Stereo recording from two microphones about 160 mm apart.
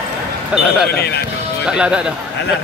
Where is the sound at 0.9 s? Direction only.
80° left.